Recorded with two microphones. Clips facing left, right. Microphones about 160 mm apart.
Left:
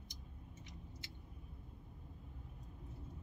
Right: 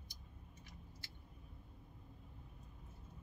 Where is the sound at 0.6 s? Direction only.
20° left (ahead or behind).